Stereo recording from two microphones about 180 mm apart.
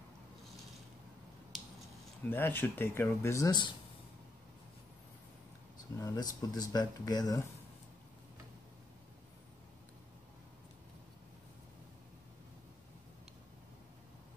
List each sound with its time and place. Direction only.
2.2 s speech: 10° left (ahead or behind)
5.9 s speech: 20° left (ahead or behind)